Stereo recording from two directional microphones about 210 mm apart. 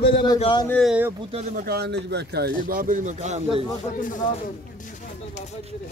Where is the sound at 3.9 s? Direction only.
40° left (ahead or behind).